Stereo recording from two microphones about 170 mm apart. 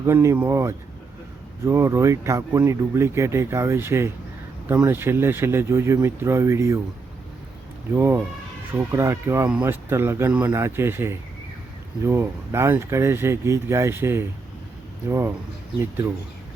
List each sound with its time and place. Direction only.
0.0 s speech: 15° right (ahead or behind)
7.9 s speech: 15° right (ahead or behind)